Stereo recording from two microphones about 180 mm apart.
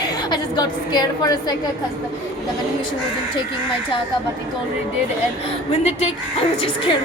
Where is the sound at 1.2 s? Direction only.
20° left (ahead or behind).